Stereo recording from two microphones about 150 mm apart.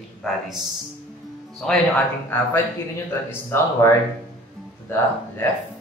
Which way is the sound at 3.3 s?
15° left (ahead or behind).